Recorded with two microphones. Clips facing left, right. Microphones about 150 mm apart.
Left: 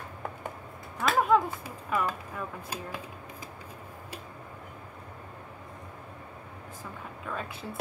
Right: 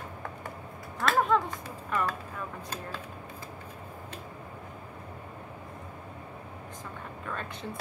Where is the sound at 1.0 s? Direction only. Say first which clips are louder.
Left 2 dB; 10° left (ahead or behind).